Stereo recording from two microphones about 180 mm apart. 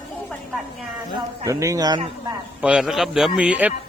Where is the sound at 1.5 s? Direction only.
20° right (ahead or behind).